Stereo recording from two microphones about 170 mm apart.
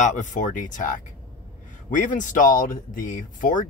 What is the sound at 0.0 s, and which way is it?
Speech, 45° left (ahead or behind).